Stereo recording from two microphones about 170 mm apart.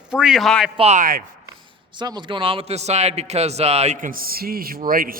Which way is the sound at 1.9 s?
25° right (ahead or behind).